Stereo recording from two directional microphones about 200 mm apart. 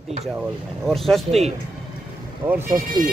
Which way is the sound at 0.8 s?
Centre (ahead or behind).